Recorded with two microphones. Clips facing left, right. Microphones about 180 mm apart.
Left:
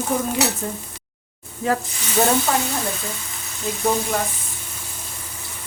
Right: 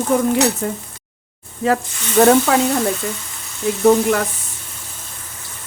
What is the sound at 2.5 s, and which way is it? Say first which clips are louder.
Speech: right 6 dB; 75° right (ahead or behind).